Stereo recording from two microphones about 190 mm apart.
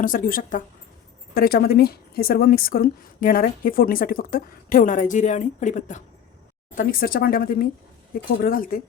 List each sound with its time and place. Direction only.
0.0 s a woman's voice: 45° left (ahead or behind)